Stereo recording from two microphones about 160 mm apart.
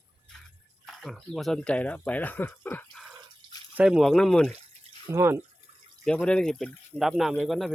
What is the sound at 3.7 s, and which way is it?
Speech, 5° right (ahead or behind).